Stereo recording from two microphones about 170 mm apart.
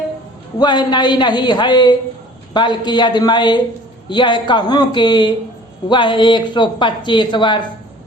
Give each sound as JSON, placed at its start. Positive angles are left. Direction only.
{"t": 0.6, "sound": "speech", "side_deg": 25}